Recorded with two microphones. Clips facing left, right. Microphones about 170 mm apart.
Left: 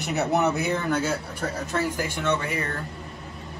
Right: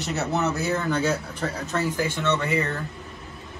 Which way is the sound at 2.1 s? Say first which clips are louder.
Right 1 dB; 15° left (ahead or behind).